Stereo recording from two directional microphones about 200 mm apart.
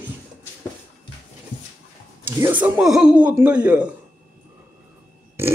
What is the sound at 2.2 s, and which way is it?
Speech, 10° right (ahead or behind).